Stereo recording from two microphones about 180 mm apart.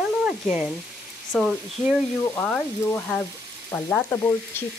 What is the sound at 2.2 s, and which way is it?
Frying, 10° left (ahead or behind).